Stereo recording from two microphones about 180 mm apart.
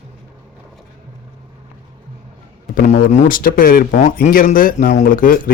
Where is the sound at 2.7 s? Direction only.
45° left (ahead or behind).